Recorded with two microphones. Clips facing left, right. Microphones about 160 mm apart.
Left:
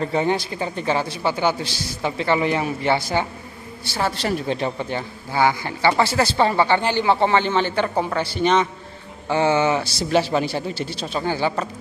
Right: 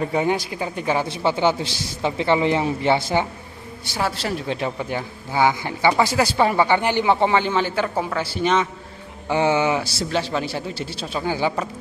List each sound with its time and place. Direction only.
0.0 s speech: 10° right (ahead or behind)
1.0 s a man's voice: 20° right (ahead or behind)
4.2 s speech: centre (ahead or behind)
10.1 s speech: 10° left (ahead or behind); by 11.7 s 10° right (ahead or behind)